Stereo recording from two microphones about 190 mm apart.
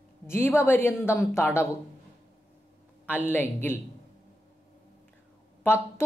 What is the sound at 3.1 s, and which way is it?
Speech, 10° left (ahead or behind).